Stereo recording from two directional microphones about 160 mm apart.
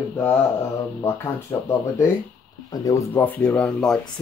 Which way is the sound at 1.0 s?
15° left (ahead or behind).